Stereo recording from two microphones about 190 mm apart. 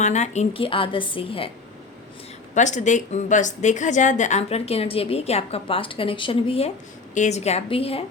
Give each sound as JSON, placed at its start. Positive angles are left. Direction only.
{"t": 0.0, "sound": "a woman's voice", "side_deg": 35}
{"t": 2.6, "sound": "a woman's voice", "side_deg": 40}
{"t": 7.1, "sound": "a woman's voice", "side_deg": 40}